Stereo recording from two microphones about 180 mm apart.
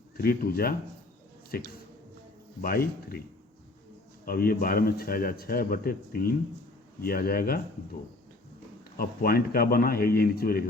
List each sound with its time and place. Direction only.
0.2 s speech: 55° left (ahead or behind)
4.3 s speech: 55° left (ahead or behind)
9.0 s speech: 55° left (ahead or behind)